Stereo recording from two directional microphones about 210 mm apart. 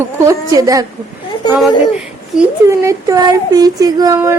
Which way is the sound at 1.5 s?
Centre (ahead or behind).